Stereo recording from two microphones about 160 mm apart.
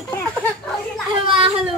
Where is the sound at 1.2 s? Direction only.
30° right (ahead or behind).